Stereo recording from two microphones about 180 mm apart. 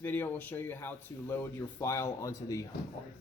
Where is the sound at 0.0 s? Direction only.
10° left (ahead or behind).